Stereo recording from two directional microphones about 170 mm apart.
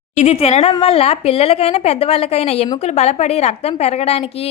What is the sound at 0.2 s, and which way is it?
A woman's voice, 40° left (ahead or behind).